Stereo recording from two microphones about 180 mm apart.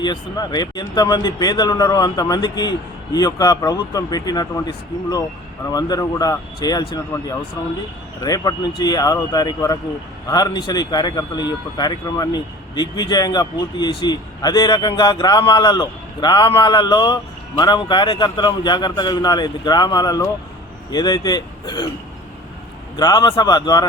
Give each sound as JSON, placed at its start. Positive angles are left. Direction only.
{"t": 0.0, "sound": "speech", "side_deg": 25}
{"t": 23.0, "sound": "speech", "side_deg": 20}